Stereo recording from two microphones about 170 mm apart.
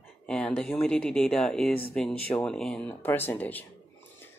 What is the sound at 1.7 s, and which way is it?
Speech, 65° left (ahead or behind).